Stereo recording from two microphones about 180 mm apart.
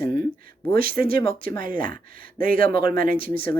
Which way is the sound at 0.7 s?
55° right (ahead or behind).